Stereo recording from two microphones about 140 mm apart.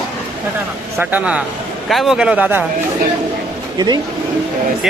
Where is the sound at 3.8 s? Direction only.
30° right (ahead or behind).